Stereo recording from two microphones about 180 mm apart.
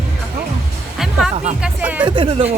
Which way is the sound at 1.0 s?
5° right (ahead or behind).